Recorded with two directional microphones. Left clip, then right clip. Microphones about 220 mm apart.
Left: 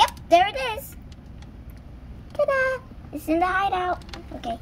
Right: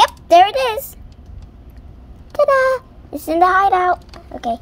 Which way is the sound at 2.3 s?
30° right (ahead or behind).